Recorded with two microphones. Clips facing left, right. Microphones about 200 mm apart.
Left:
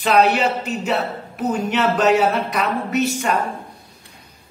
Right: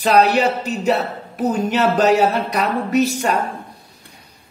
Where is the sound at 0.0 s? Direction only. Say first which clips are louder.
Right 2 dB; 40° right (ahead or behind).